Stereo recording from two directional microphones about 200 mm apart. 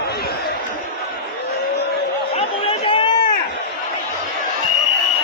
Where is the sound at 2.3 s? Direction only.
25° left (ahead or behind).